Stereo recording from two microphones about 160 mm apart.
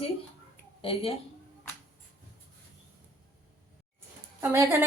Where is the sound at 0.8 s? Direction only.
35° left (ahead or behind).